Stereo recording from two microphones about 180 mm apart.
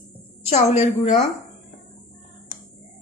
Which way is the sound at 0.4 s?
35° left (ahead or behind).